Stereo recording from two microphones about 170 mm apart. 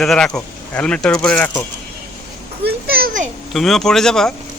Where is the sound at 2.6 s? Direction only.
65° right (ahead or behind).